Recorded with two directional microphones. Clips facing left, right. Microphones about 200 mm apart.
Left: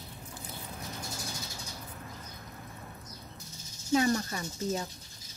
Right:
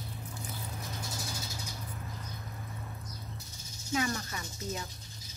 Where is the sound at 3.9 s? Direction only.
35° left (ahead or behind).